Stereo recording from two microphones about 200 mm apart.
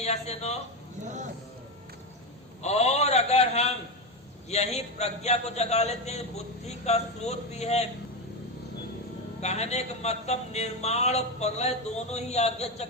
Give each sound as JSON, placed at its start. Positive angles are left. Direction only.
{"t": 0.0, "sound": "a man's voice", "side_deg": 35}
{"t": 1.0, "sound": "vehicle", "side_deg": -35}
{"t": 2.6, "sound": "a sound", "side_deg": 30}
{"t": 4.4, "sound": "a man's voice", "side_deg": 35}
{"t": 9.4, "sound": "a man's voice", "side_deg": 35}